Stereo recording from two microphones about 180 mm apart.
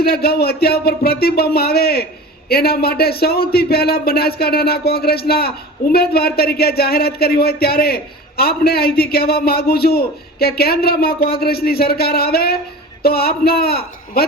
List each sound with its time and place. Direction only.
0.0 s speech: 60° left (ahead or behind)